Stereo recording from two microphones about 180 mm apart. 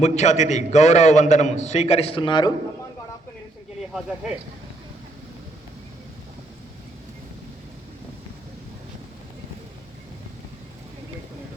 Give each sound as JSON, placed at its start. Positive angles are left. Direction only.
{"t": 0.0, "sound": "a man's voice", "side_deg": 40}
{"t": 3.8, "sound": "speech", "side_deg": -5}